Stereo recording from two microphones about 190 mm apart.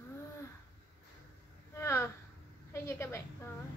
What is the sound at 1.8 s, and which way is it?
A woman's voice, 15° left (ahead or behind).